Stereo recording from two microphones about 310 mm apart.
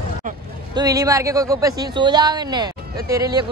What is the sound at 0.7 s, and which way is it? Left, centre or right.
Speech, centre.